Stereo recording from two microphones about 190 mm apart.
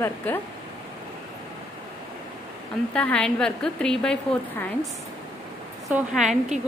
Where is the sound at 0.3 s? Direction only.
10° left (ahead or behind).